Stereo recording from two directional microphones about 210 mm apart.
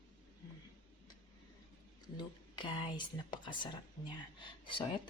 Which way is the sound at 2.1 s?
20° left (ahead or behind).